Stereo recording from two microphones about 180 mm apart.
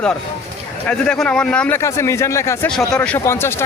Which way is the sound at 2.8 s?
5° left (ahead or behind).